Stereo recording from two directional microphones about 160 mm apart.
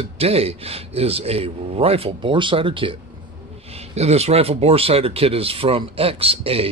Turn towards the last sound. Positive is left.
turn(degrees=-35)  # may be behind; listen again after turning